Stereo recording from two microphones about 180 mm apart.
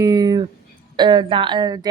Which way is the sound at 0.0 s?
20° right (ahead or behind).